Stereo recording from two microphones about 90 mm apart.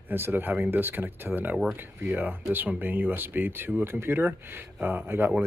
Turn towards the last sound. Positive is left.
turn(degrees=-25)  # may be behind; listen again after turning